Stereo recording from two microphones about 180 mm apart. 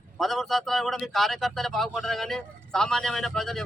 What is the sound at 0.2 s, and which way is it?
A man's voice, centre (ahead or behind).